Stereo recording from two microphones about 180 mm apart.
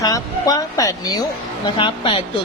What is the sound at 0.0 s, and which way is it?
A man's voice, 20° left (ahead or behind).